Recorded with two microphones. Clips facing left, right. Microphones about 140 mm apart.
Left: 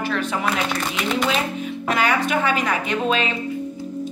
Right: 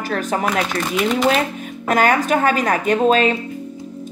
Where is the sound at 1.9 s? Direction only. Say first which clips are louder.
Right 5 dB; 45° right (ahead or behind).